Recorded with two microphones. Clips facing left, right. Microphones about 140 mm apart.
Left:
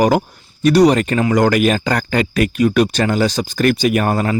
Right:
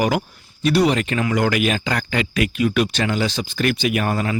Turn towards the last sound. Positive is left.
turn(degrees=40)  # may be behind; listen again after turning